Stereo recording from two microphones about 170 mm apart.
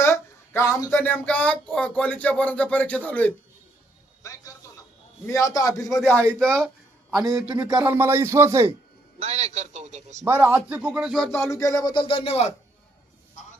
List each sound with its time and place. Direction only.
0.0 s speech: 15° left (ahead or behind)
4.2 s a sound: 20° left (ahead or behind)
5.2 s speech: 20° left (ahead or behind)
6.4 s speech: 5° left (ahead or behind)
7.1 s a man's voice: 20° right (ahead or behind)
7.9 s speech: 15° right (ahead or behind)
9.1 s a man's voice: 40° right (ahead or behind)
10.2 s speech: 10° right (ahead or behind)
11.3 s speech: 15° left (ahead or behind); by 12.5 s 40° left (ahead or behind)